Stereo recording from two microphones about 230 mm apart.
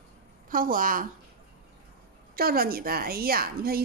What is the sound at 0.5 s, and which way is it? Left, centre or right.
Speech, right.